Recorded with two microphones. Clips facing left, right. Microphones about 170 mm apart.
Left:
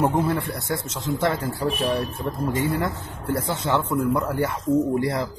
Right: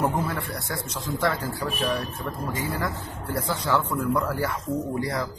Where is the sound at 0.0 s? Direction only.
25° left (ahead or behind).